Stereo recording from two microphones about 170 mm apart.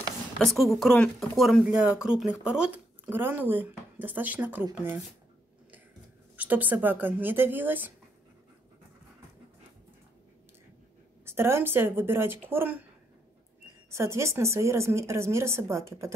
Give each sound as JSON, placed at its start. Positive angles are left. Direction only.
{"t": 0.4, "sound": "speech", "side_deg": 0}
{"t": 6.3, "sound": "a woman's voice", "side_deg": -10}
{"t": 11.2, "sound": "a woman's voice", "side_deg": -15}
{"t": 13.8, "sound": "a woman's voice", "side_deg": -15}